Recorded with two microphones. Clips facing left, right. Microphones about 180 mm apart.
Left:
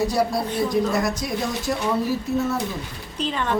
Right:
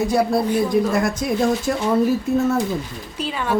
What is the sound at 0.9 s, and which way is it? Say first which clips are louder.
Speech: right 4 dB; 50° right (ahead or behind).